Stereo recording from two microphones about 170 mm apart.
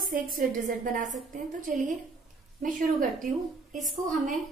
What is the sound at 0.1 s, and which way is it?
A woman's voice, 50° right (ahead or behind).